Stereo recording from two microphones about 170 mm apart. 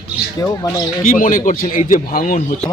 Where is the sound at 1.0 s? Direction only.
55° left (ahead or behind).